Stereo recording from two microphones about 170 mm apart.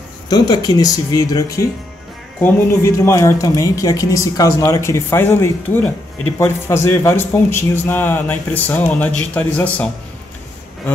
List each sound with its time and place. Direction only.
0.3 s speech: 25° left (ahead or behind); by 9.8 s 10° left (ahead or behind)